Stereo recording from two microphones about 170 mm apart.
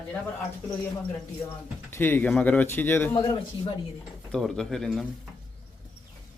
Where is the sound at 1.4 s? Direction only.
15° left (ahead or behind).